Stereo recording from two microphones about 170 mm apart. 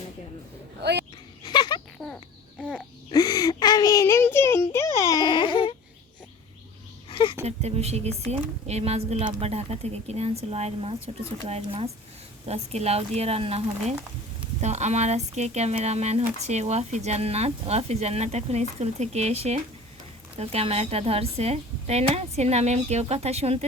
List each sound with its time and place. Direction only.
0.8 s speech: 80° right
1.5 s a sound: 25° left (ahead or behind)
2.0 s chicken: centre (ahead or behind)
2.6 s babbling: 5° left (ahead or behind)
3.1 s child singing: 20° left (ahead or behind)
7.1 s a sound: 30° left (ahead or behind)
7.4 s speech: 40° right (ahead or behind)